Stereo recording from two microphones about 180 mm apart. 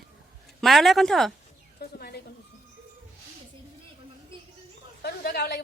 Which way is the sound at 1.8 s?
65° left (ahead or behind).